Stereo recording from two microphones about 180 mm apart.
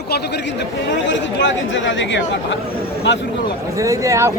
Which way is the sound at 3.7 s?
20° right (ahead or behind).